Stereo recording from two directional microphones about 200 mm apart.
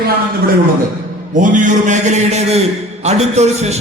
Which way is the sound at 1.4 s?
40° right (ahead or behind).